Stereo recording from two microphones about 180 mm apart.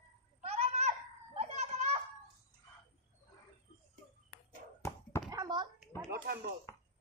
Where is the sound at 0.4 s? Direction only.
35° right (ahead or behind).